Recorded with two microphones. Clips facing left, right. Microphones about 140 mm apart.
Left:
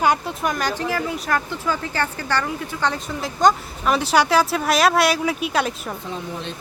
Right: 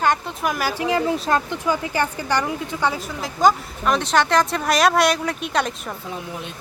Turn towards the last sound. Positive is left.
turn(degrees=5)  # may be behind; listen again after turning